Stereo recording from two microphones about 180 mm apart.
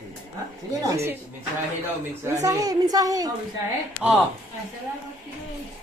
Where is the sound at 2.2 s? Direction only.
20° right (ahead or behind).